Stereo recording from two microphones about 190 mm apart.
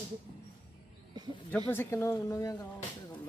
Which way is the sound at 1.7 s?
10° left (ahead or behind).